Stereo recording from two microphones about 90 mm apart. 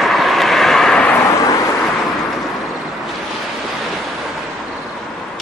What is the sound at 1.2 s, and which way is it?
Vehicle, 35° left (ahead or behind).